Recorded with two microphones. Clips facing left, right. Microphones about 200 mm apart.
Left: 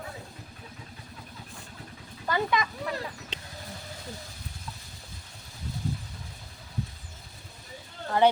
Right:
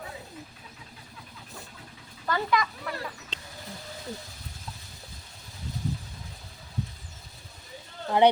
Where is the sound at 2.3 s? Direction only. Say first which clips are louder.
Even; 20° left (ahead or behind).